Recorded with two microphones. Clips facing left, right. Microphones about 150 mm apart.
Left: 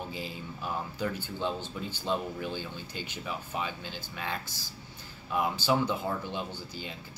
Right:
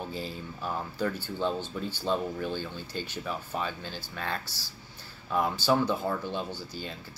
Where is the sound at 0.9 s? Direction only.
15° left (ahead or behind).